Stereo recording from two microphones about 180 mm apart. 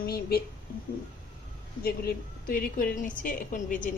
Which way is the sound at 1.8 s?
55° left (ahead or behind).